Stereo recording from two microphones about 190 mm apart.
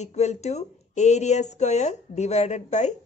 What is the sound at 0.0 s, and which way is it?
A woman's voice, 35° left (ahead or behind).